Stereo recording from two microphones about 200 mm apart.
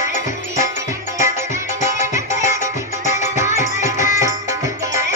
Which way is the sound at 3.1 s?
35° left (ahead or behind).